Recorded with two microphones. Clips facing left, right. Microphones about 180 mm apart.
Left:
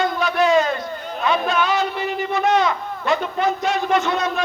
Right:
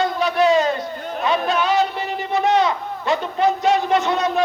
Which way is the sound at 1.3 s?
35° right (ahead or behind).